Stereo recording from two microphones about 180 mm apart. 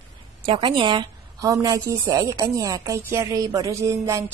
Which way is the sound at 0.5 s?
25° right (ahead or behind).